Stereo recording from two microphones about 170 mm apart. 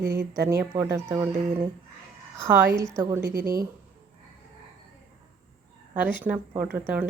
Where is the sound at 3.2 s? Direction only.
65° right (ahead or behind).